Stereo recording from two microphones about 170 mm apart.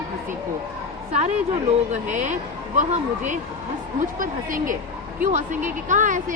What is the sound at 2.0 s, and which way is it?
A woman's voice, 45° right (ahead or behind).